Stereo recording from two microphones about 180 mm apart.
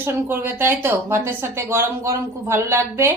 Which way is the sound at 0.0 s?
10° right (ahead or behind).